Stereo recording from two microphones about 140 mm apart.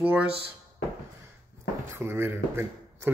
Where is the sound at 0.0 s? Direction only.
10° right (ahead or behind).